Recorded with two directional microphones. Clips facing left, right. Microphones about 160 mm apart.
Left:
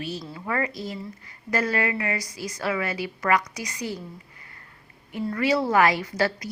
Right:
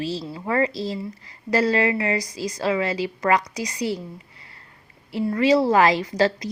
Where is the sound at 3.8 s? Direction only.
90° right.